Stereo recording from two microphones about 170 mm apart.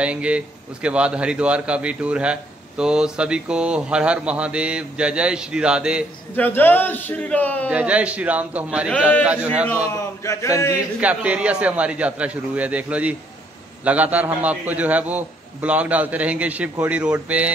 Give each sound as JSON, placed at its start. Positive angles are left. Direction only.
{"t": 0.0, "sound": "speech", "side_deg": -5}
{"t": 6.3, "sound": "speech", "side_deg": 10}
{"t": 7.7, "sound": "speech", "side_deg": -5}
{"t": 9.8, "sound": "speech", "side_deg": 15}
{"t": 10.7, "sound": "speech", "side_deg": -10}